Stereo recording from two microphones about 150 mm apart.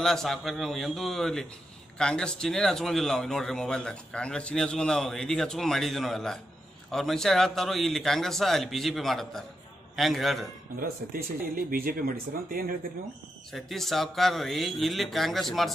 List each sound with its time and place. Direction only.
0.0 s a man's voice: 5° left (ahead or behind)
10.8 s speech: 70° right (ahead or behind)
13.5 s a man's voice: centre (ahead or behind)